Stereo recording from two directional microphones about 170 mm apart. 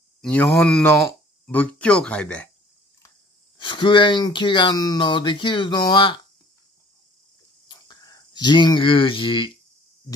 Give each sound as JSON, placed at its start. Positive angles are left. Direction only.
{"t": 0.2, "sound": "speech", "side_deg": 5}
{"t": 3.5, "sound": "speech", "side_deg": 30}
{"t": 7.6, "sound": "a sound", "side_deg": 25}